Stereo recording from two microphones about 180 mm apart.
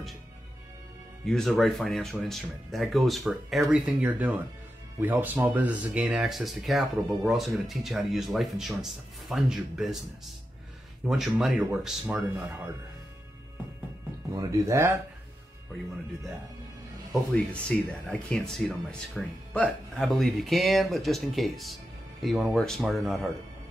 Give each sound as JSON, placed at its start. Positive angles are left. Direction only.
{"t": 1.2, "sound": "speech", "side_deg": 0}
{"t": 11.1, "sound": "speech", "side_deg": 0}
{"t": 14.3, "sound": "speech", "side_deg": -20}
{"t": 17.1, "sound": "speech", "side_deg": 5}